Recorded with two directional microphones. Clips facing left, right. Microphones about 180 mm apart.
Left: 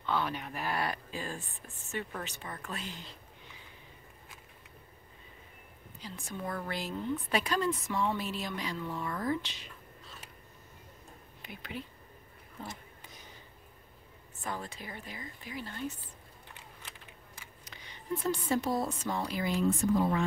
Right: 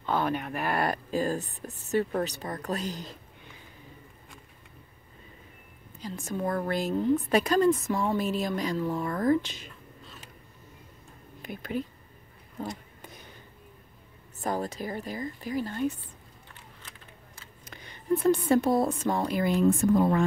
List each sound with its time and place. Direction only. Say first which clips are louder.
0.0 s a woman's voice: right 5 dB; 50° right (ahead or behind)
5.9 s a woman's voice: right 8 dB; 45° right (ahead or behind)
11.4 s a woman's voice: right 10 dB; 45° right (ahead or behind)
14.4 s speech: right 9 dB; 40° right (ahead or behind)
17.6 s a woman's voice: right 10 dB; 50° right (ahead or behind)